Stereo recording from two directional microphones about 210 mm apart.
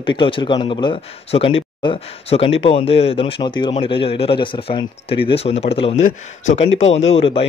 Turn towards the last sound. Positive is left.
turn(degrees=25)  # may be behind; listen again after turning